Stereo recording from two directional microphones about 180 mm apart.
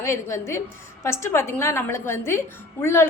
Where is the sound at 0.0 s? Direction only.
15° left (ahead or behind).